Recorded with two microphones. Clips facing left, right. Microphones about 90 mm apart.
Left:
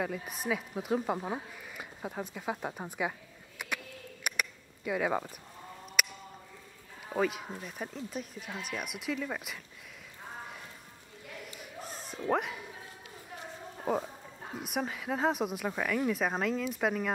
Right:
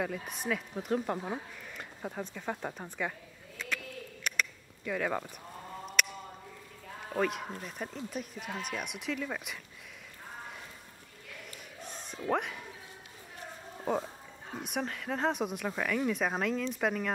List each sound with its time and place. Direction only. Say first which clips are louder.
0.0 s speech: even; centre (ahead or behind)
6.0 s a sound: right 1 dB; 5° left (ahead or behind)
7.2 s speech: left 1 dB; 5° left (ahead or behind)
8.4 s speech: right 2 dB; 50° right (ahead or behind)
8.6 s speech: left 3 dB; centre (ahead or behind)
11.8 s a sound: left 1 dB; centre (ahead or behind)
12.3 s speech: left 1 dB; centre (ahead or behind)
13.9 s speech: even; 5° left (ahead or behind)